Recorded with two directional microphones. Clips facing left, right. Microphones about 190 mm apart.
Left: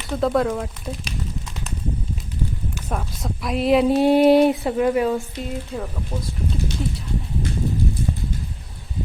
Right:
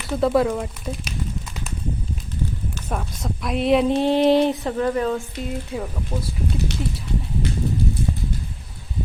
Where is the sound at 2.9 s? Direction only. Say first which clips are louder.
Even; centre (ahead or behind).